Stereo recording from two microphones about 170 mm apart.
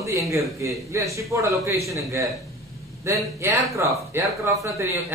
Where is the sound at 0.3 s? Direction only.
15° right (ahead or behind).